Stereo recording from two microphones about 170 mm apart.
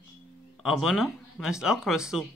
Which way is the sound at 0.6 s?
Centre (ahead or behind).